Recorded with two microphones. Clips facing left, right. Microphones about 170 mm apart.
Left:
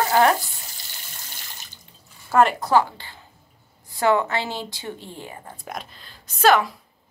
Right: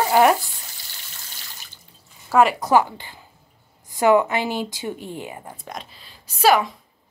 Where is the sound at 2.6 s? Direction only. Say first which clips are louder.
Right 1 dB; 20° right (ahead or behind).